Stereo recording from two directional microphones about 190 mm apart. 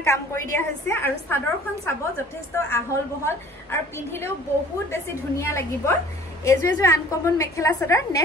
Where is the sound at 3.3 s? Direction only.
15° left (ahead or behind).